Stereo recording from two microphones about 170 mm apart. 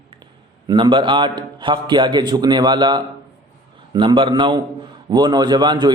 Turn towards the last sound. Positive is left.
turn(degrees=-25)  # may be behind; listen again after turning